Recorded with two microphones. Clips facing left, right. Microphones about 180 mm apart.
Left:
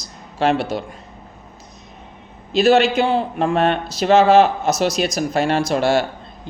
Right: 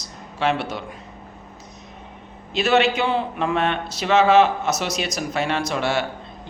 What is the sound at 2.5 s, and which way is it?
Speech, 40° left (ahead or behind).